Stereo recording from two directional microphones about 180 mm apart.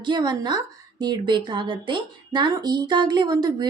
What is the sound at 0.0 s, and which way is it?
A woman's voice, 25° right (ahead or behind).